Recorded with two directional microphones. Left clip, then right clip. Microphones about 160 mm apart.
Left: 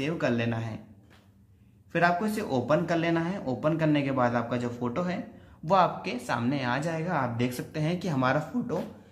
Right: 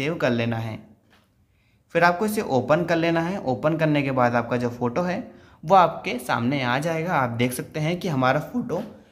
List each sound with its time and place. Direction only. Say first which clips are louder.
0.0 s speech: right 5 dB; 20° right (ahead or behind)
1.9 s speech: right 6 dB; 25° right (ahead or behind)
5.7 s speech: right 7 dB; 25° right (ahead or behind)